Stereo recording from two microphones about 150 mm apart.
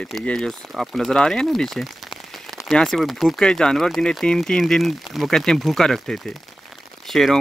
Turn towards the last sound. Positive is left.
turn(degrees=0)  # may be behind; listen again after turning